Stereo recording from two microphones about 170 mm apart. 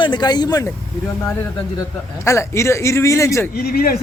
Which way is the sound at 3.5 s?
60° left (ahead or behind).